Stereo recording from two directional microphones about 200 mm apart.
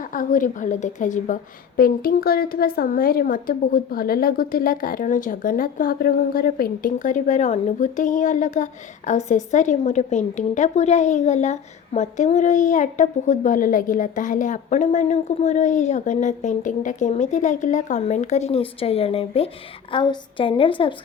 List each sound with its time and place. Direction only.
0.0 s a woman's voice: 40° left (ahead or behind); by 20.9 s 25° left (ahead or behind)